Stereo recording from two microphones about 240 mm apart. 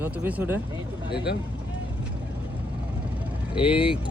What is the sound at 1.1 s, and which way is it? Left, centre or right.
Speech, left.